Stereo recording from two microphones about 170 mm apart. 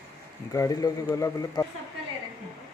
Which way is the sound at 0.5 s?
20° left (ahead or behind).